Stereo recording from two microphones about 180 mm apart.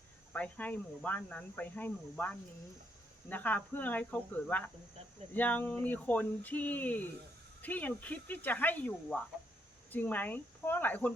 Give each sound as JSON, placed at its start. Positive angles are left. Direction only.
{"t": 0.3, "sound": "speech", "side_deg": 10}